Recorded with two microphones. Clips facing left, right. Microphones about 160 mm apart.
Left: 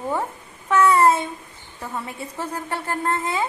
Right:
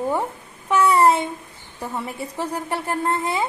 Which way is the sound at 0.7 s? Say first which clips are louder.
Even; 15° right (ahead or behind).